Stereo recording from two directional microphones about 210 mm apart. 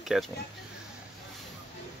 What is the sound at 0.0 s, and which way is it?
Speech, centre (ahead or behind).